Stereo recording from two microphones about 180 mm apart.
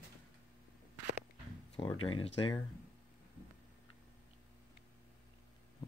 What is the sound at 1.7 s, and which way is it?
Speech, 30° left (ahead or behind).